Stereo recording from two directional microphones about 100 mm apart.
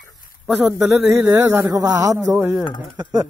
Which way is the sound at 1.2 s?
20° right (ahead or behind).